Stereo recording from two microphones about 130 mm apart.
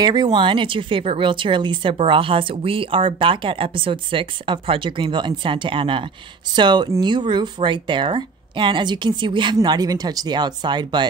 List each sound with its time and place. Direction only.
0.0 s speech: 35° right (ahead or behind)